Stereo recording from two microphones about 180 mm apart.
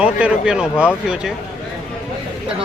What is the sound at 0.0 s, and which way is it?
Speech, 5° right (ahead or behind).